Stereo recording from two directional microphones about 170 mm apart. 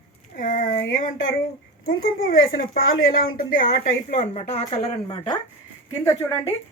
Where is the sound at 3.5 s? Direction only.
45° left (ahead or behind); by 5.4 s 30° left (ahead or behind).